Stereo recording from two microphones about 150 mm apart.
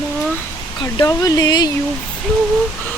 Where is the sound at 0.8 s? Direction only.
30° left (ahead or behind).